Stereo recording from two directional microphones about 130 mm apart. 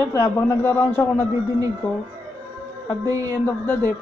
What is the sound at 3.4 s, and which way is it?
Speech, 15° left (ahead or behind).